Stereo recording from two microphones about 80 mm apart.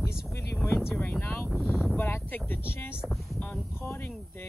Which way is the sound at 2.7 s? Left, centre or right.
Left.